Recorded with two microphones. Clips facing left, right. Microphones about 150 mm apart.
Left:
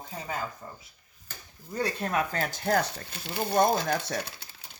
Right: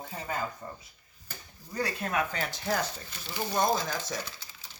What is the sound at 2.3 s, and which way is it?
Speech, 50° left (ahead or behind).